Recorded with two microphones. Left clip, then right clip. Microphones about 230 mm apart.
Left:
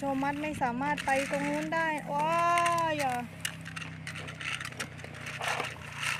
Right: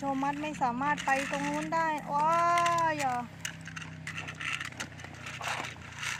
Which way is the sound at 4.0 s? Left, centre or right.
Centre.